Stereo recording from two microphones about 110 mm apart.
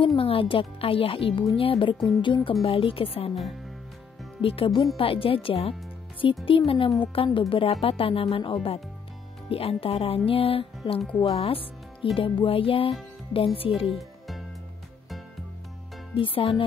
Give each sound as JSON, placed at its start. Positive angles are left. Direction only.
{"t": 0.0, "sound": "speech", "side_deg": 55}
{"t": 4.4, "sound": "speech", "side_deg": 55}
{"t": 13.7, "sound": "speech", "side_deg": 0}
{"t": 16.2, "sound": "speech", "side_deg": 55}